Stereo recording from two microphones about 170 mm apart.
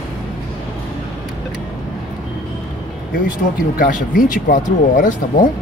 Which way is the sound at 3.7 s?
50° left (ahead or behind).